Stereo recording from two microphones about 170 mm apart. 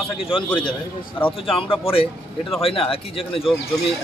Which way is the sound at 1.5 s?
30° left (ahead or behind).